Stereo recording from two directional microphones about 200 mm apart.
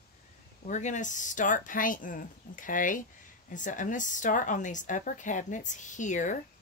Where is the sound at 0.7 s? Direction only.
35° left (ahead or behind).